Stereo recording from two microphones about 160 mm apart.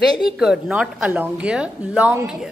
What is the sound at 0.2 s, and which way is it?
A woman's voice, 5° right (ahead or behind).